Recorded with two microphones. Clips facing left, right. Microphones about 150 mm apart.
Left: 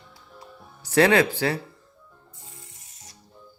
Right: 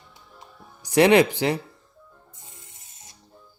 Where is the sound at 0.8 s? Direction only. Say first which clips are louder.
Right 2 dB; 15° right (ahead or behind).